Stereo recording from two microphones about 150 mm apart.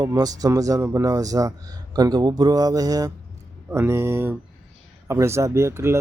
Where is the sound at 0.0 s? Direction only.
25° right (ahead or behind).